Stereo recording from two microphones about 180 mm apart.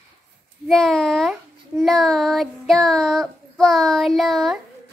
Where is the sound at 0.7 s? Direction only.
5° left (ahead or behind).